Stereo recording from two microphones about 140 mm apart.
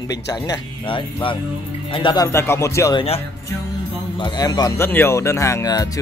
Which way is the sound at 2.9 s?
45° left (ahead or behind).